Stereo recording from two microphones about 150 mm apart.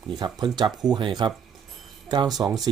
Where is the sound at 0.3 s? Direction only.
30° right (ahead or behind).